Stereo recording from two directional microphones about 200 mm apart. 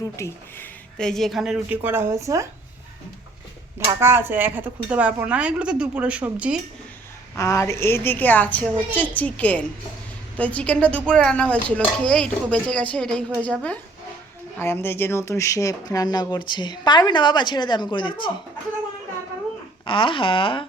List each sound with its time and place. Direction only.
0.2 s speech: 10° left (ahead or behind); by 2.5 s 15° right (ahead or behind)
4.0 s a woman's voice: 10° right (ahead or behind)
7.3 s a woman's voice: 15° left (ahead or behind)
19.8 s speech: 25° left (ahead or behind)